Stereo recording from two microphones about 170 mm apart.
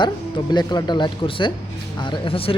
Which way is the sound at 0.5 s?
25° left (ahead or behind).